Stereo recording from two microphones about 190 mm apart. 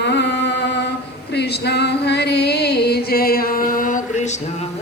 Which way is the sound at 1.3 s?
60° left (ahead or behind).